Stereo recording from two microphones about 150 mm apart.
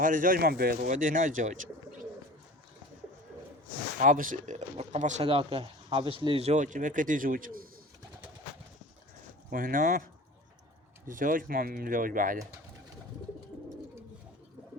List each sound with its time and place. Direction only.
0.0 s speech: 65° right (ahead or behind)
4.0 s speech: 60° right (ahead or behind)
5.2 s speech: 40° right (ahead or behind); by 7.7 s 70° right (ahead or behind)
9.5 s speech: 70° right (ahead or behind)